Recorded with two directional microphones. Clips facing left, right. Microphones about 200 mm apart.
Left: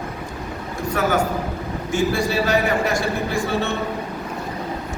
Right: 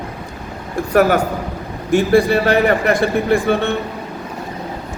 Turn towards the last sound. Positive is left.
turn(degrees=-60)  # may be behind; listen again after turning